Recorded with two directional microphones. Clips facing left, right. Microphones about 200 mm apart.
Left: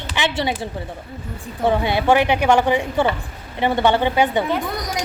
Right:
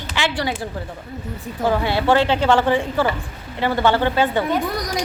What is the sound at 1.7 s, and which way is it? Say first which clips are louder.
A woman's voice: left 1 dB; 20° left (ahead or behind).